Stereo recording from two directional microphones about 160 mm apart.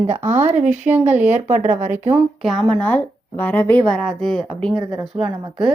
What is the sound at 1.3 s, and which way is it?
Speech, 50° right (ahead or behind).